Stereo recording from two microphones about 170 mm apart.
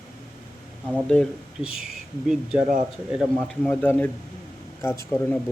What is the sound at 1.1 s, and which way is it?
Speech, centre (ahead or behind).